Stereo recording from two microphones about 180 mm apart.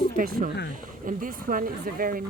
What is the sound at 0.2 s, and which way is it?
Speech, 45° right (ahead or behind).